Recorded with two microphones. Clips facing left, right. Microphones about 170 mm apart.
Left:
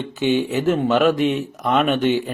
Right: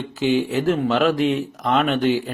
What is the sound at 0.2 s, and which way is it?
A man's voice, 25° left (ahead or behind).